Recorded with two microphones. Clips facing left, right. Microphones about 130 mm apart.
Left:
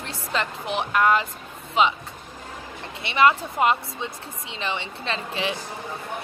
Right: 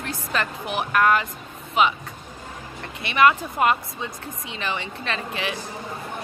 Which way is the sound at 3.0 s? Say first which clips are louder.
Right 1 dB; 25° left (ahead or behind).